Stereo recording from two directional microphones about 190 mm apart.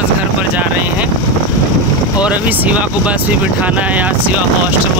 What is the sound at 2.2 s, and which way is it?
Speech, 10° right (ahead or behind).